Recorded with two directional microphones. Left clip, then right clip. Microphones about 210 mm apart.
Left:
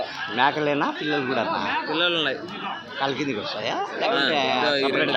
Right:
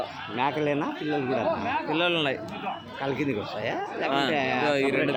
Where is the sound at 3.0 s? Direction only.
5° right (ahead or behind).